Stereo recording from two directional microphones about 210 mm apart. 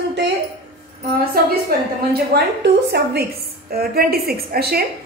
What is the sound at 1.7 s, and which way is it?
A woman's voice, 45° right (ahead or behind).